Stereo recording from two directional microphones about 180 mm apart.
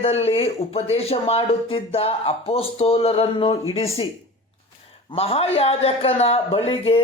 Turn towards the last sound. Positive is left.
turn(degrees=30)  # may be behind; listen again after turning